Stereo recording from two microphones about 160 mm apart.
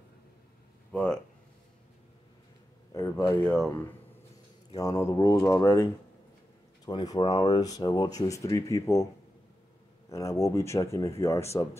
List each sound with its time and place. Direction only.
0.9 s speech: 5° left (ahead or behind)
2.9 s speech: 15° left (ahead or behind)
4.7 s speech: 20° left (ahead or behind)
6.9 s speech: 30° left (ahead or behind)
10.0 s speech: 20° left (ahead or behind)